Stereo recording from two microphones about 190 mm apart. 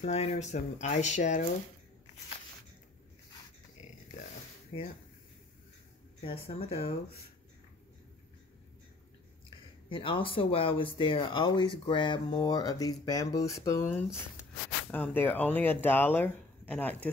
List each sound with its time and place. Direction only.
0.0 s speech: 35° left (ahead or behind)
4.7 s speech: 25° left (ahead or behind)
6.2 s speech: 30° left (ahead or behind)
9.8 s speech: 25° left (ahead or behind); by 17.1 s 10° left (ahead or behind)